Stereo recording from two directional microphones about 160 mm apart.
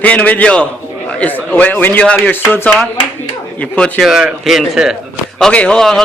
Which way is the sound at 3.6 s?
5° left (ahead or behind).